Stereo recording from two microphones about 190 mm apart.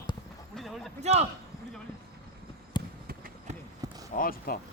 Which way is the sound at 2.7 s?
25° left (ahead or behind).